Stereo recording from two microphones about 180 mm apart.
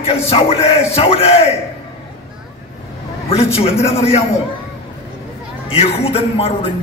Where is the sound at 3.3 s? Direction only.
35° left (ahead or behind).